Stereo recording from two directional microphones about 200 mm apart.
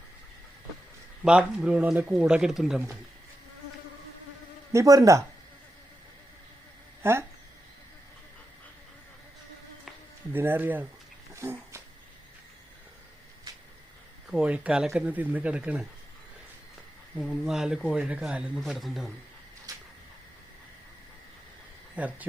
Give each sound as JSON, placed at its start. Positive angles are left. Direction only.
{"t": 1.2, "sound": "speech", "side_deg": -5}
{"t": 4.7, "sound": "speech", "side_deg": -15}
{"t": 7.0, "sound": "speech", "side_deg": -10}
{"t": 10.3, "sound": "speech", "side_deg": -10}
{"t": 11.3, "sound": "a sound", "side_deg": -15}
{"t": 14.3, "sound": "speech", "side_deg": -5}
{"t": 17.2, "sound": "speech", "side_deg": -5}
{"t": 19.7, "sound": "a sound", "side_deg": -15}
{"t": 21.9, "sound": "speech", "side_deg": -5}